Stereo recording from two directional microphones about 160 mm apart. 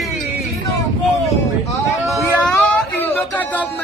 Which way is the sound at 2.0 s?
Centre (ahead or behind).